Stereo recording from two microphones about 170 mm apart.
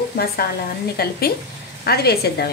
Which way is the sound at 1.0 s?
65° left (ahead or behind).